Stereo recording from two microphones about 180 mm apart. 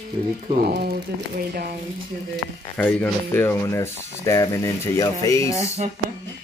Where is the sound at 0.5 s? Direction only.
60° right (ahead or behind).